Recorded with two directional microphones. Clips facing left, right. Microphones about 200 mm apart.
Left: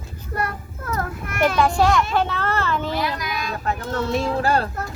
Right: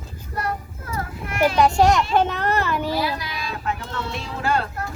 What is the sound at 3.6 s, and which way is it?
Speech, 40° left (ahead or behind).